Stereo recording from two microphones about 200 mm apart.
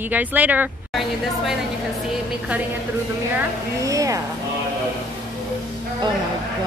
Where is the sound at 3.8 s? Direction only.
15° right (ahead or behind).